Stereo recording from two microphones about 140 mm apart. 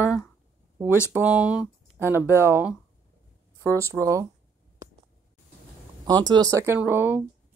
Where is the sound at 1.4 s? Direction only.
10° right (ahead or behind).